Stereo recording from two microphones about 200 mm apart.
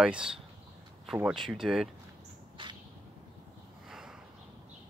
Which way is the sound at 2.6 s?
25° right (ahead or behind).